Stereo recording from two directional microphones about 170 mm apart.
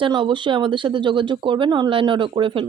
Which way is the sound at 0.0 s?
30° right (ahead or behind).